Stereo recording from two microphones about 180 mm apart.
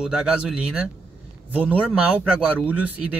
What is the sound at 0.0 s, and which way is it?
Speech, 5° right (ahead or behind).